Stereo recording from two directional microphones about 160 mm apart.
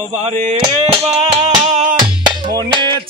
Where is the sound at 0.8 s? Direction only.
40° right (ahead or behind).